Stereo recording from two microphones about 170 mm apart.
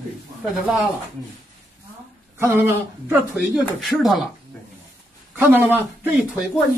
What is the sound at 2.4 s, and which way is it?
Speech, 15° right (ahead or behind).